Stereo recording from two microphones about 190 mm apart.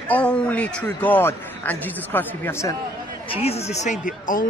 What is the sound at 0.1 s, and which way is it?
A man's voice, 5° left (ahead or behind).